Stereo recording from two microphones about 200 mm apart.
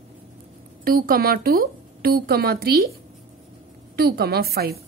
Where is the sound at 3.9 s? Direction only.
50° right (ahead or behind).